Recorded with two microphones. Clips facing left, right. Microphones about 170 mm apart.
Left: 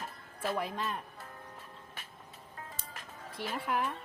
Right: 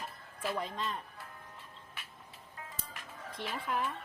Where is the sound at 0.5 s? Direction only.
5° left (ahead or behind).